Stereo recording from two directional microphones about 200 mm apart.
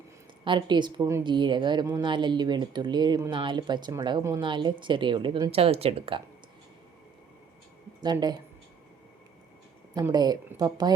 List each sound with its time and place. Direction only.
0.4 s a woman's voice: 25° right (ahead or behind)
8.0 s a woman's voice: 20° right (ahead or behind)
9.9 s a woman's voice: 20° right (ahead or behind)